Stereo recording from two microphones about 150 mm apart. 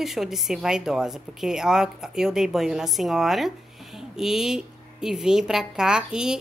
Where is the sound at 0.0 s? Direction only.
Centre (ahead or behind).